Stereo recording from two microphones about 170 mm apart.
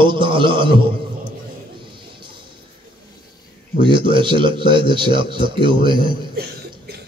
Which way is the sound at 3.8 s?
30° right (ahead or behind).